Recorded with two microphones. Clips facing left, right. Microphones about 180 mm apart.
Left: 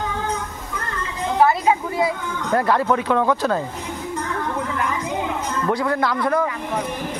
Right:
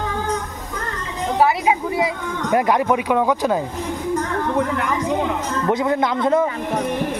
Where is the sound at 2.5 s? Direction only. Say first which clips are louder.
Right 1 dB; 15° right (ahead or behind).